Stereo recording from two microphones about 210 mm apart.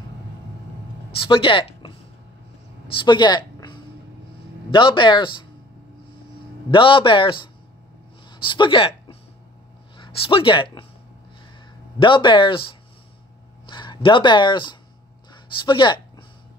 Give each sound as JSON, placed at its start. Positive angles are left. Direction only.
{"t": 1.2, "sound": "speech", "side_deg": 25}
{"t": 3.1, "sound": "a sound", "side_deg": 20}
{"t": 4.6, "sound": "speech", "side_deg": 25}
{"t": 6.7, "sound": "a woman's voice", "side_deg": 25}
{"t": 12.0, "sound": "speech", "side_deg": 20}
{"t": 13.7, "sound": "speech", "side_deg": 20}